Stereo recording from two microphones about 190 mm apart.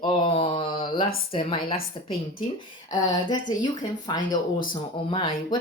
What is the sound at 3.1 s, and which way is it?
A woman's voice, 20° left (ahead or behind).